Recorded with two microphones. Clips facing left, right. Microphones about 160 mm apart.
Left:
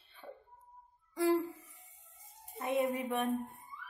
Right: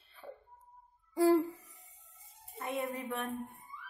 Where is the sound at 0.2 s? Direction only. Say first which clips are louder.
Right 1 dB; 10° left (ahead or behind).